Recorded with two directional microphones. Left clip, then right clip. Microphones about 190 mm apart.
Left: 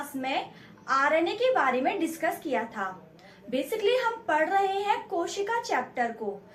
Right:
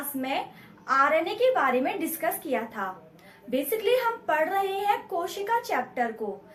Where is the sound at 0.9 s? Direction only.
20° right (ahead or behind).